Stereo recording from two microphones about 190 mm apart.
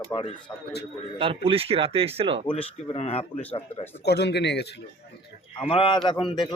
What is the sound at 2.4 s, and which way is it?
Speech, 30° left (ahead or behind).